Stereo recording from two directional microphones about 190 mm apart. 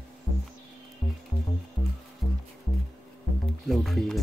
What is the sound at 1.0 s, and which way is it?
Music, 30° left (ahead or behind).